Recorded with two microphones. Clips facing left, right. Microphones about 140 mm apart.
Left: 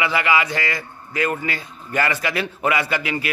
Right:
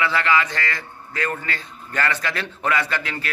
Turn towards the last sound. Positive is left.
turn(degrees=10)  # may be behind; listen again after turning